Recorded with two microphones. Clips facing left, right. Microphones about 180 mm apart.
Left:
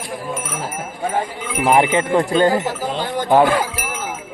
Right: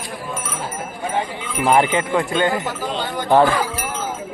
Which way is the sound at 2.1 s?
35° left (ahead or behind).